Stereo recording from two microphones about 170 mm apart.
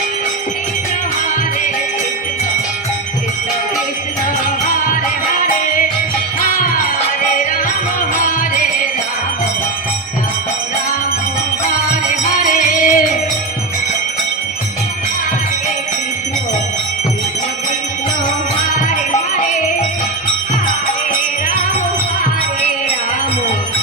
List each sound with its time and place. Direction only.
5.3 s music: 50° left (ahead or behind)
12.4 s music: 50° left (ahead or behind)